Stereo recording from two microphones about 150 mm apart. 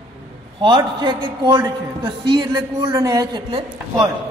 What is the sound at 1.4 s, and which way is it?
Speech, 15° right (ahead or behind).